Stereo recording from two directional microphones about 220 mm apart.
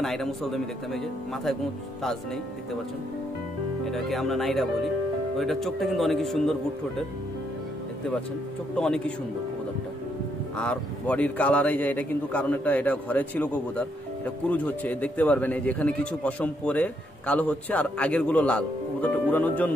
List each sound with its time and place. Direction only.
0.0 s speech: centre (ahead or behind)
3.8 s speech: centre (ahead or behind)
8.7 s speech: 5° left (ahead or behind)
10.6 s speech: 5° left (ahead or behind)